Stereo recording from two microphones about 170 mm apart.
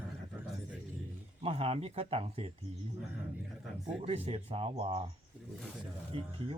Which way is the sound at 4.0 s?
35° right (ahead or behind).